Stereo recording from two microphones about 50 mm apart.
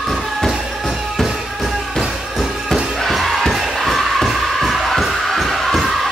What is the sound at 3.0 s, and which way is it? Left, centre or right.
Music, centre.